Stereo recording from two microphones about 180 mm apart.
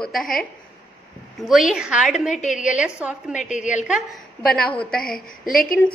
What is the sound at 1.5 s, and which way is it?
A woman's voice, 5° right (ahead or behind).